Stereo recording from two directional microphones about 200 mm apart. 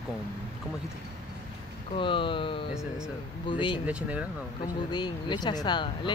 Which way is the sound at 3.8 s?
5° right (ahead or behind).